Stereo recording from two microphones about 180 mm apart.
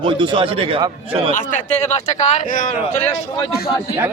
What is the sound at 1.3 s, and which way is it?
Speech, 40° left (ahead or behind).